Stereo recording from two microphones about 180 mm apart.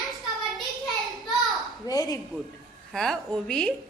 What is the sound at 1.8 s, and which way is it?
Speech, 20° left (ahead or behind).